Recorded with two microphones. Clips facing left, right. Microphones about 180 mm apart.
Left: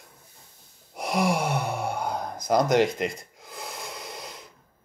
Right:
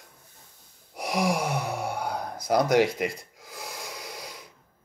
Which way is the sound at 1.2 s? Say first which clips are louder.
Left 1 dB; 10° right (ahead or behind).